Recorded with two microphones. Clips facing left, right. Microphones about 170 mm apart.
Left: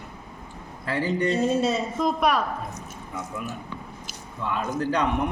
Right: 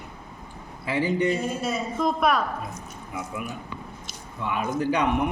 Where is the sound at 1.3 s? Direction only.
25° left (ahead or behind).